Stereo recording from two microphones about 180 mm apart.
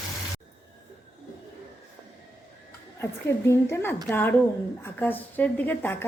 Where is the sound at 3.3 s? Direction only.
15° left (ahead or behind).